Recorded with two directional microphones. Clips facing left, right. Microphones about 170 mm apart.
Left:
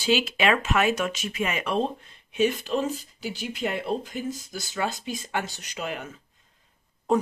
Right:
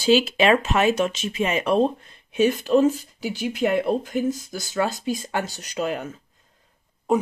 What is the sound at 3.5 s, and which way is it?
Speech, 50° right (ahead or behind).